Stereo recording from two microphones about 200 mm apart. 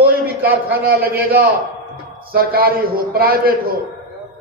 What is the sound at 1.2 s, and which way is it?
A man's voice, 50° right (ahead or behind).